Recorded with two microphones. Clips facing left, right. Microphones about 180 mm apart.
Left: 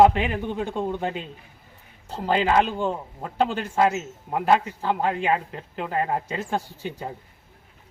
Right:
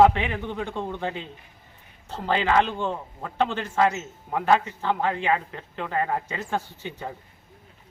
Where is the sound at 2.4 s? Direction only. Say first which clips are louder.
Left 1 dB; 35° left (ahead or behind).